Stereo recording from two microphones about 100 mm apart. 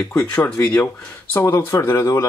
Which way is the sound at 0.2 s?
20° left (ahead or behind).